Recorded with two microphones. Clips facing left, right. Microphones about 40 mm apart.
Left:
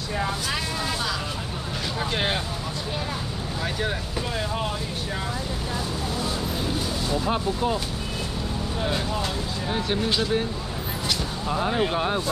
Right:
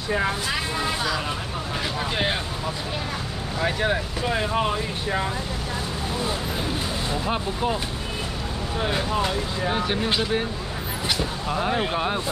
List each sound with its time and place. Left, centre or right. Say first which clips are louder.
0.5 s speech: right 2 dB; centre
3.6 s speech: right 6 dB; right
7.1 s speech: left 3 dB; right
8.7 s speech: right 4 dB; right